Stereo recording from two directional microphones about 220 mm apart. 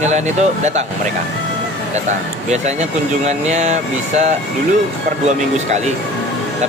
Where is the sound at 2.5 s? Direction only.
30° right (ahead or behind).